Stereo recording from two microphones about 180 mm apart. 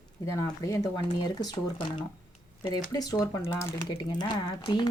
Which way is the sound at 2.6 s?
20° left (ahead or behind).